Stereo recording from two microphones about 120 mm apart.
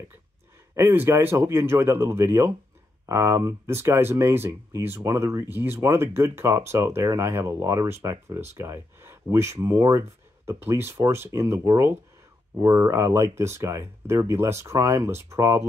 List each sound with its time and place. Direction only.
0.7 s speech: 25° right (ahead or behind)